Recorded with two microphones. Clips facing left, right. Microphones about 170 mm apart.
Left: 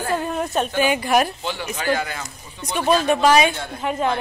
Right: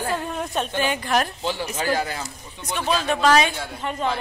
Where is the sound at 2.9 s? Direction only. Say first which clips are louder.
Left 2 dB; 10° left (ahead or behind).